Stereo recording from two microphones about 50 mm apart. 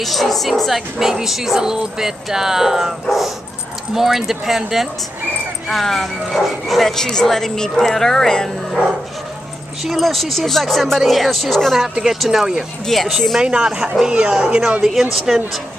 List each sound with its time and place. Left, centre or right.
0.0 s speech: centre
3.9 s speech: centre
9.8 s speech: centre
11.9 s speech: centre
12.8 s speech: centre
13.4 s speech: centre
15.1 s speech: centre